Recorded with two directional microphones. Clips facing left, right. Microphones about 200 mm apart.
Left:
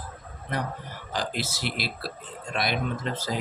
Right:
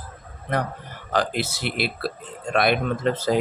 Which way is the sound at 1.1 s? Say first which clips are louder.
Right 7 dB; 60° right (ahead or behind).